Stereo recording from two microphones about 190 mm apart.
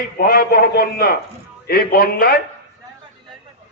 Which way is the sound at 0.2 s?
50° left (ahead or behind).